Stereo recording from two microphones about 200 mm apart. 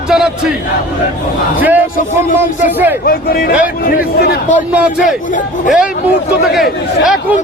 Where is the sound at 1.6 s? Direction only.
10° right (ahead or behind).